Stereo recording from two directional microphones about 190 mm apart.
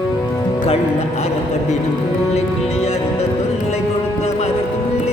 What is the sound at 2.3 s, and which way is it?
Music, 35° left (ahead or behind).